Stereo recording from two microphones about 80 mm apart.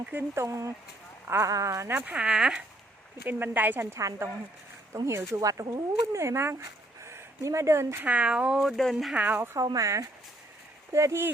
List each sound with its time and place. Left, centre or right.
0.0 s speech: right
0.4 s speech: right
2.1 s speech: centre
3.2 s speech: right
8.0 s speech: centre
8.5 s speech: centre
9.1 s speech: right
9.7 s speech: right